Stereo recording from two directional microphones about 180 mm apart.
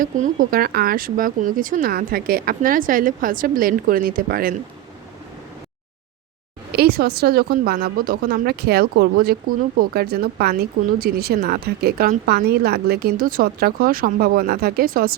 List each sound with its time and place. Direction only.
0.0 s speech: 55° right (ahead or behind)
6.7 s a woman's voice: 60° right (ahead or behind)